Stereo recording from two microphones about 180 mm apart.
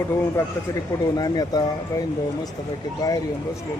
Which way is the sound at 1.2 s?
20° left (ahead or behind).